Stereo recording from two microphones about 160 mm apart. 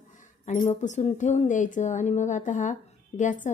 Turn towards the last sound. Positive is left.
turn(degrees=50)  # may be behind; listen again after turning